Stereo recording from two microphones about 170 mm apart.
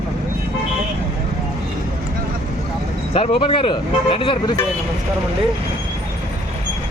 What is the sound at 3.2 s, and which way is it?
Speech, 30° left (ahead or behind).